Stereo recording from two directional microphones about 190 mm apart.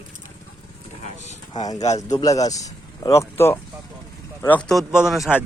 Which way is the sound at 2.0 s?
20° left (ahead or behind).